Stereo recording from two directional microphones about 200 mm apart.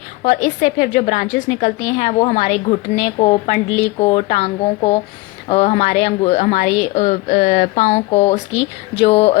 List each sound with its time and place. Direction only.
0.4 s a woman's voice: 40° left (ahead or behind)
3.7 s speech: 75° left (ahead or behind)
3.9 s a woman's voice: 25° left (ahead or behind)